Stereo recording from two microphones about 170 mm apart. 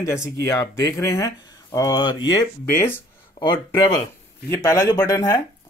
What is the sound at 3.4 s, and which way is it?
Speech, 25° left (ahead or behind).